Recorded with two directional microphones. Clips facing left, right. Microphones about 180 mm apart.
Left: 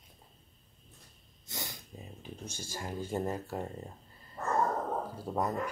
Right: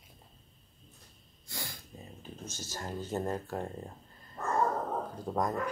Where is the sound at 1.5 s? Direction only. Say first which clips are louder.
Left 1 dB; 20° left (ahead or behind).